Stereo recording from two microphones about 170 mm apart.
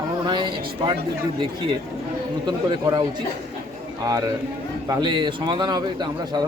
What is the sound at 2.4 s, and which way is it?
Speech, 25° right (ahead or behind).